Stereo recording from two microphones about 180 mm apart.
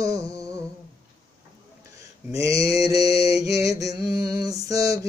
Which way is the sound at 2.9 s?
20° right (ahead or behind).